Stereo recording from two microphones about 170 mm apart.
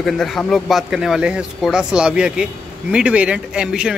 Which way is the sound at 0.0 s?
Centre (ahead or behind).